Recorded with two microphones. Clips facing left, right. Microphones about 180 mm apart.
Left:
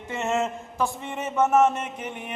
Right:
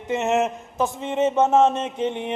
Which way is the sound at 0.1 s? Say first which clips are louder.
Right 5 dB; 20° right (ahead or behind).